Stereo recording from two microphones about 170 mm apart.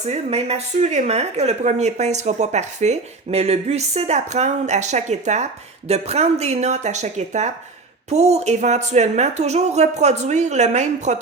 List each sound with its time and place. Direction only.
0.0 s a woman's voice: 40° right (ahead or behind)